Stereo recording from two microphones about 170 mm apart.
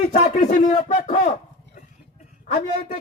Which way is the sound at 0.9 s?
55° left (ahead or behind).